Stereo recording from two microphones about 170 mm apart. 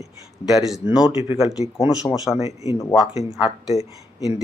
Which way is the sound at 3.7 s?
20° right (ahead or behind).